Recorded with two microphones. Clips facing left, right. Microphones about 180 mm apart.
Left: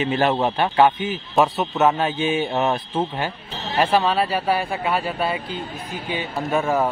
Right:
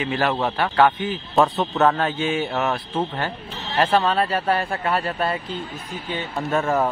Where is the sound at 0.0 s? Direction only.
20° left (ahead or behind).